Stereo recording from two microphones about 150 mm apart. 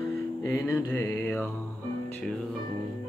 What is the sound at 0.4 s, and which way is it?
Mantra, 20° left (ahead or behind).